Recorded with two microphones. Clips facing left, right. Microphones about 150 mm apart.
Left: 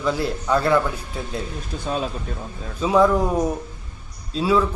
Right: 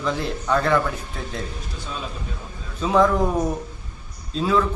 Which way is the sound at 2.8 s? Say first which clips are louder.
Left 1 dB; 5° left (ahead or behind).